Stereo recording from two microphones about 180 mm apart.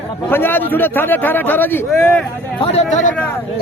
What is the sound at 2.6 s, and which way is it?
Speech, 35° left (ahead or behind).